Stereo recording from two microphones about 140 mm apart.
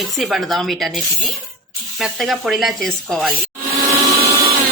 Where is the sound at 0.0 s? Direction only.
Centre (ahead or behind).